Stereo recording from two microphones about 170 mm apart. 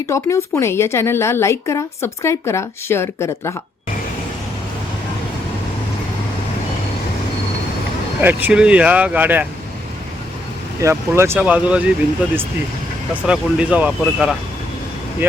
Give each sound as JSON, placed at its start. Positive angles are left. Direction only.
{"t": 0.1, "sound": "a woman's voice", "side_deg": 15}
{"t": 8.2, "sound": "speech", "side_deg": -10}
{"t": 10.8, "sound": "speech", "side_deg": -15}
{"t": 13.2, "sound": "speech", "side_deg": -5}